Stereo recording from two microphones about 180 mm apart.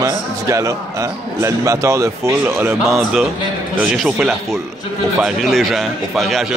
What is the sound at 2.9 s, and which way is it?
A man's voice, centre (ahead or behind).